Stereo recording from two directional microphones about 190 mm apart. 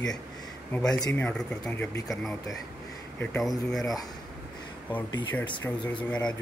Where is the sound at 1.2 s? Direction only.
5° left (ahead or behind).